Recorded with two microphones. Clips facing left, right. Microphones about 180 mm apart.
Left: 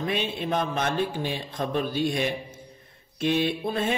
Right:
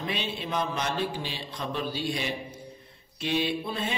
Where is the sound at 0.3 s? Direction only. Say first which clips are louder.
Left 3 dB; 50° left (ahead or behind).